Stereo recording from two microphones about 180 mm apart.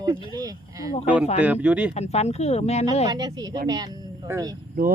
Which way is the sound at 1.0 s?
10° right (ahead or behind).